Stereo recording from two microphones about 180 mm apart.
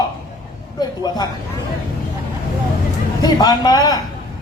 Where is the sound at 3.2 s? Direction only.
25° left (ahead or behind).